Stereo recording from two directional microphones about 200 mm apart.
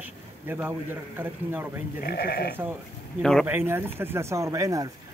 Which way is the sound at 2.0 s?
55° left (ahead or behind).